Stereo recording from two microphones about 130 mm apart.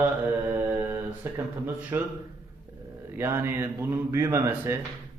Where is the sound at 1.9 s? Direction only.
15° right (ahead or behind).